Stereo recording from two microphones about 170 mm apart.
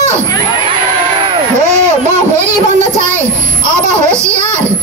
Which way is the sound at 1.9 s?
40° right (ahead or behind).